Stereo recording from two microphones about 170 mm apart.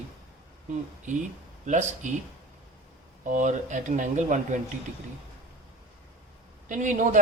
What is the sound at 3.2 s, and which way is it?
Speech, 45° right (ahead or behind).